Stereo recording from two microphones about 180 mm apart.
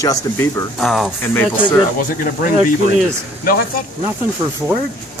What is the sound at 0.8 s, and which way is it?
Speech, centre (ahead or behind).